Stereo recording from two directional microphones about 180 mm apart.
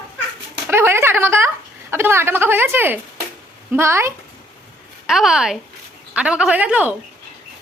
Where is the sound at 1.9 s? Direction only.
15° right (ahead or behind).